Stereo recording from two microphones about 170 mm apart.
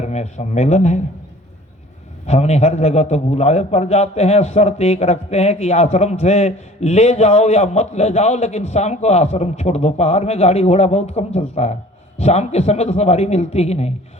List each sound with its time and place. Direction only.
0.0 s speech: 40° left (ahead or behind)
2.2 s a man's voice: 40° left (ahead or behind)